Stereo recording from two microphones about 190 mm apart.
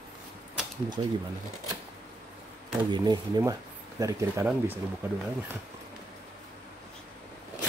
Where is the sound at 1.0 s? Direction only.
25° right (ahead or behind).